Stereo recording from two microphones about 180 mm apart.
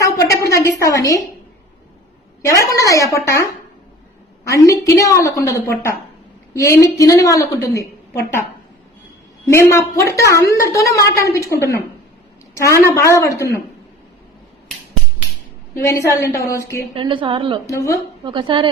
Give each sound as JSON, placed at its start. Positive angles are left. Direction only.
{"t": 0.0, "sound": "a sound", "side_deg": 15}
{"t": 2.5, "sound": "a woman's voice", "side_deg": 15}
{"t": 4.4, "sound": "a woman's voice", "side_deg": 20}
{"t": 9.5, "sound": "a woman's voice", "side_deg": 15}
{"t": 12.5, "sound": "a woman's voice", "side_deg": 15}
{"t": 15.7, "sound": "a woman's voice", "side_deg": 15}
{"t": 16.9, "sound": "a woman's voice", "side_deg": -30}
{"t": 17.7, "sound": "a woman's voice", "side_deg": 15}
{"t": 18.3, "sound": "a woman's voice", "side_deg": -25}